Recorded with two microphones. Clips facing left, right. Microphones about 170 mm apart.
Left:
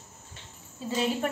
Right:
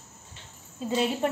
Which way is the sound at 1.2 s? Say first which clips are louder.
Right 3 dB; 25° right (ahead or behind).